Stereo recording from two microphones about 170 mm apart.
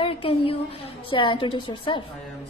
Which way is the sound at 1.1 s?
30° left (ahead or behind).